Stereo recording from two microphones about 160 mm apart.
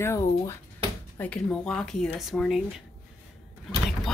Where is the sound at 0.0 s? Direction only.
20° left (ahead or behind); by 2.6 s centre (ahead or behind).